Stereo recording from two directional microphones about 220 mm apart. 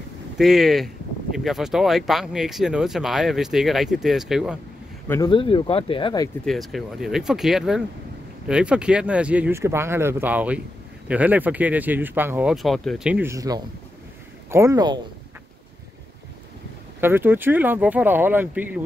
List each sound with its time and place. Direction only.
0.4 s speech: centre (ahead or behind)
5.0 s speech: 15° left (ahead or behind)
6.4 s speech: centre (ahead or behind); by 15.0 s 15° right (ahead or behind)
17.0 s speech: 10° right (ahead or behind)